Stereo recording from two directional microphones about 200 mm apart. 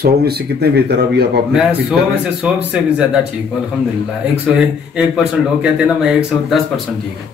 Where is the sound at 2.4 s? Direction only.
5° right (ahead or behind).